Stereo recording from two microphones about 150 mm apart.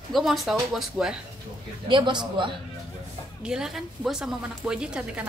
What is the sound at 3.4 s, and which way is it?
A woman's voice, 5° right (ahead or behind).